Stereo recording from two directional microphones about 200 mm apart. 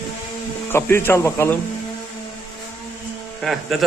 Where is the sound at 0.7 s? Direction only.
10° left (ahead or behind).